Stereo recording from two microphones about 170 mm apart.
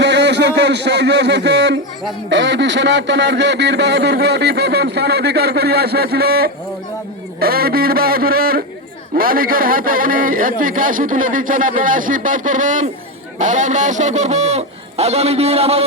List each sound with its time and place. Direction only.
0.0 s a man's voice: 90° right; by 15.8 s 35° right (ahead or behind)